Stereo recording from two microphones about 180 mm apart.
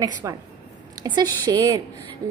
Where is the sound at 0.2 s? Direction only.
15° right (ahead or behind).